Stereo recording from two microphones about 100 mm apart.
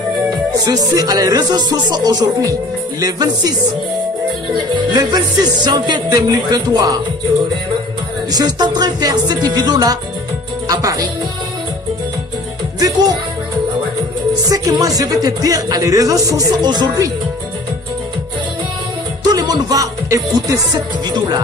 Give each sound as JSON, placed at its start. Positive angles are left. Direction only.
{"t": 0.7, "sound": "speech", "side_deg": -40}
{"t": 4.6, "sound": "music", "side_deg": -45}
{"t": 8.3, "sound": "music", "side_deg": -45}
{"t": 10.7, "sound": "speech", "side_deg": -35}
{"t": 12.8, "sound": "speech", "side_deg": -40}
{"t": 14.5, "sound": "speech", "side_deg": -35}
{"t": 19.3, "sound": "music", "side_deg": -40}